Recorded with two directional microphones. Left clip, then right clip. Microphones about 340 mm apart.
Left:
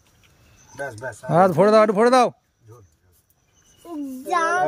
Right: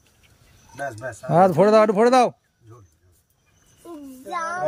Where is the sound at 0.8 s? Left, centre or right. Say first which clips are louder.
Even; centre.